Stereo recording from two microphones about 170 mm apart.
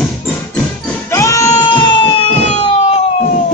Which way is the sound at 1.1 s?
15° left (ahead or behind).